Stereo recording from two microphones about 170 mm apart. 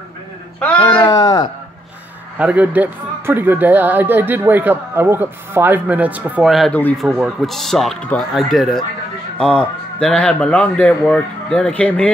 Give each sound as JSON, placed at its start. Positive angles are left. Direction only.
{"t": 0.7, "sound": "speech", "side_deg": 25}
{"t": 2.3, "sound": "speech", "side_deg": -10}